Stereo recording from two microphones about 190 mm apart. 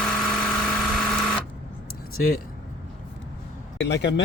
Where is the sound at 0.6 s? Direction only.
Centre (ahead or behind).